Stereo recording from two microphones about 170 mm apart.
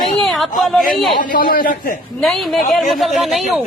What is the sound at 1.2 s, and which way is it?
Speech, 55° left (ahead or behind).